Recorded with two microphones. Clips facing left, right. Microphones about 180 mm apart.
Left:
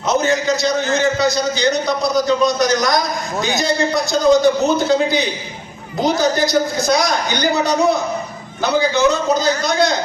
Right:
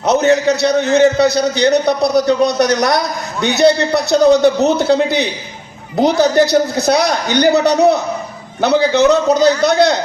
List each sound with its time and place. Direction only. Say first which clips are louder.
0.0 s a man's voice: right 5 dB; 65° right (ahead or behind)